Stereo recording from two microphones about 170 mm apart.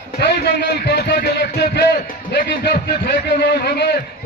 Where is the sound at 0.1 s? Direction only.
80° left.